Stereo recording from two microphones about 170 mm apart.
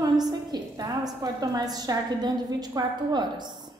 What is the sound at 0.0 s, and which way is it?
A woman's voice, 25° right (ahead or behind).